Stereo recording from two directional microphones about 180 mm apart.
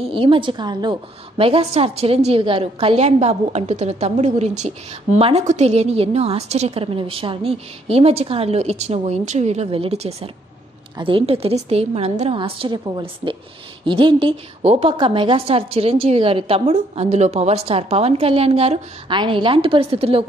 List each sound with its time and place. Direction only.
0.1 s a woman's voice: 30° right (ahead or behind)